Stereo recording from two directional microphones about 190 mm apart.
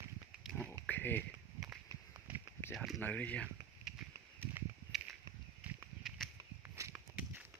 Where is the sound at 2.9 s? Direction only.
10° left (ahead or behind).